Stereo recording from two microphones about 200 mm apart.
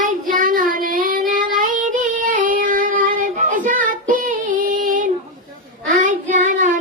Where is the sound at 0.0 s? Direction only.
40° right (ahead or behind).